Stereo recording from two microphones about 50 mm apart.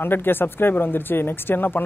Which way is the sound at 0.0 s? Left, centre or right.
Left.